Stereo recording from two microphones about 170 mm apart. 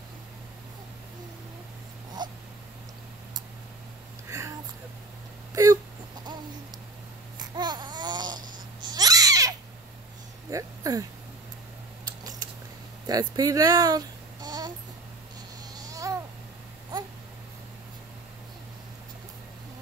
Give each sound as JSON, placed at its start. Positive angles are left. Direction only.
{"t": 2.2, "sound": "dog", "side_deg": -25}
{"t": 4.3, "sound": "a sound", "side_deg": -15}
{"t": 7.3, "sound": "babbling", "side_deg": -25}
{"t": 10.5, "sound": "a sound", "side_deg": -20}
{"t": 12.0, "sound": "camera", "side_deg": -20}
{"t": 13.0, "sound": "speech", "side_deg": -20}
{"t": 15.8, "sound": "babbling", "side_deg": -20}